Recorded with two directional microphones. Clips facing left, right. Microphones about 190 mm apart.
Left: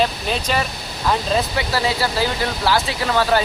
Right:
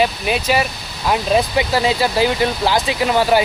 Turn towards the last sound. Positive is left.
turn(degrees=-15)  # may be behind; listen again after turning